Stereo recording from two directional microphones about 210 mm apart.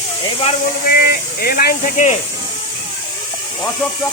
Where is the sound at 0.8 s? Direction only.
45° left (ahead or behind).